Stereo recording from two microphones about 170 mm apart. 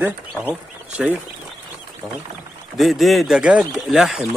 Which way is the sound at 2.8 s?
Centre (ahead or behind).